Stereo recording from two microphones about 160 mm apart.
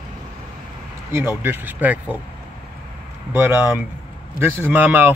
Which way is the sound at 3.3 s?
15° right (ahead or behind).